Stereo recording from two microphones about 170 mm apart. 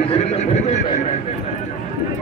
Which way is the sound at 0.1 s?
40° left (ahead or behind).